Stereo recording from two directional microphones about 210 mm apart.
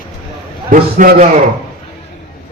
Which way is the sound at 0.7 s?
40° right (ahead or behind).